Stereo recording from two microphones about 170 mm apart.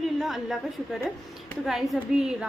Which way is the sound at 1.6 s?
Centre (ahead or behind).